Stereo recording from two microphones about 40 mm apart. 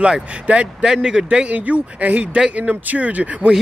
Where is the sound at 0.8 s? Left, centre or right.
Centre.